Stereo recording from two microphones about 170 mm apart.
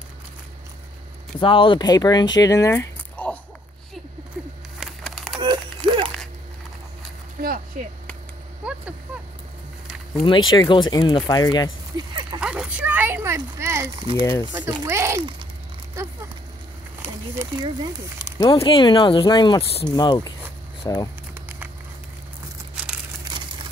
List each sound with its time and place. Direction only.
1.4 s speech: 30° left (ahead or behind); by 3.3 s 10° left (ahead or behind)
4.7 s wood: centre (ahead or behind)
5.9 s a sound: 30° right (ahead or behind)
7.4 s speech: 55° right (ahead or behind)
8.6 s a sound: 5° right (ahead or behind)
10.2 s speech: 25° left (ahead or behind)
12.1 s dog: 30° right (ahead or behind)
12.4 s speech: 5° right (ahead or behind)
14.4 s a child's voice: 25° right (ahead or behind)
17.6 s a child's voice: 25° right (ahead or behind)
18.4 s speech: 30° left (ahead or behind)
23.2 s a sound: 25° right (ahead or behind)